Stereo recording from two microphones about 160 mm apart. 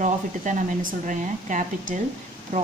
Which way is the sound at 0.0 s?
55° right (ahead or behind).